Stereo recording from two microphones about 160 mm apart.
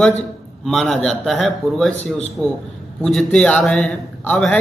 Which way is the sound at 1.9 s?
40° left (ahead or behind).